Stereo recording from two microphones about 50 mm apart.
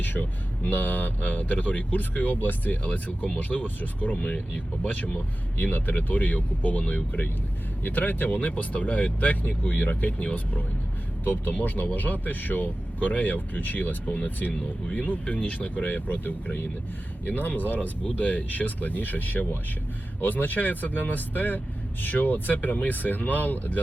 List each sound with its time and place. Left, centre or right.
0.0 s a sound: left
0.7 s speech: left
4.2 s speech: left
5.5 s speech: left